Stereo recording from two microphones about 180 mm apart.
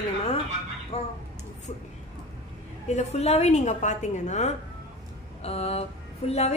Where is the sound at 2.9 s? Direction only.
35° left (ahead or behind).